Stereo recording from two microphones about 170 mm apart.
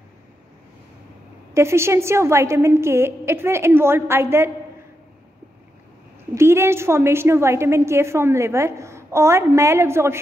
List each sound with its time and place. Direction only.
1.5 s a woman's voice: 15° right (ahead or behind)
6.3 s a woman's voice: 15° right (ahead or behind)